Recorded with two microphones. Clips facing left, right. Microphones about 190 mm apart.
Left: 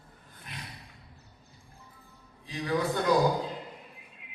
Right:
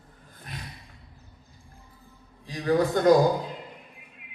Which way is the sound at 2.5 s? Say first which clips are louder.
Right 6 dB; 40° right (ahead or behind).